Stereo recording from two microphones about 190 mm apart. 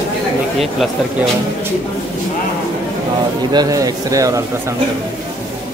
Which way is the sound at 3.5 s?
20° right (ahead or behind).